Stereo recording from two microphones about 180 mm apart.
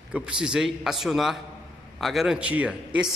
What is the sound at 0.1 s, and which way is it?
A man's voice, 5° right (ahead or behind).